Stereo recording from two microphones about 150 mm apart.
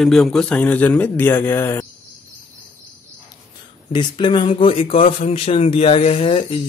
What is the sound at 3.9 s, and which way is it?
Speech, 30° left (ahead or behind).